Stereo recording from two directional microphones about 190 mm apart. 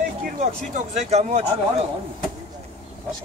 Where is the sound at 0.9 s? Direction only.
35° right (ahead or behind).